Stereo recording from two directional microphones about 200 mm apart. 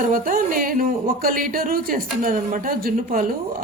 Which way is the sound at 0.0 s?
45° right (ahead or behind).